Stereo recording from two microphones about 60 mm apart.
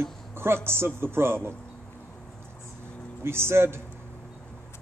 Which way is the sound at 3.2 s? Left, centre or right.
Right.